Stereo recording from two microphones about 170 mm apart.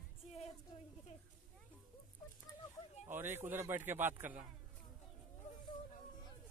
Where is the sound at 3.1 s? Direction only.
15° right (ahead or behind).